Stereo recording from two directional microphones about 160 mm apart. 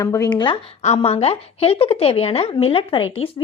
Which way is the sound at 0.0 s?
20° left (ahead or behind).